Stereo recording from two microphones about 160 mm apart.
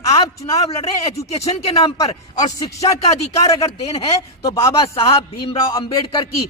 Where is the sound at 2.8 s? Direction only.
40° left (ahead or behind).